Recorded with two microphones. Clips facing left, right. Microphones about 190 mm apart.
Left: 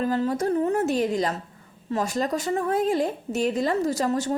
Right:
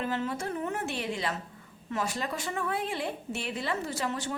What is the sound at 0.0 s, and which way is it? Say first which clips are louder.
A woman's voice: left 8 dB; 40° left (ahead or behind).